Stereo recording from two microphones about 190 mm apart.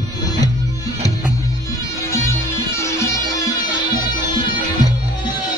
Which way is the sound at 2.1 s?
15° left (ahead or behind).